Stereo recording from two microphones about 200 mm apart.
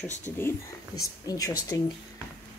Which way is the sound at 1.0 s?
15° left (ahead or behind).